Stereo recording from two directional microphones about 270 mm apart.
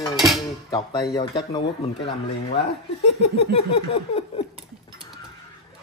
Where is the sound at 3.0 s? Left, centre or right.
Left.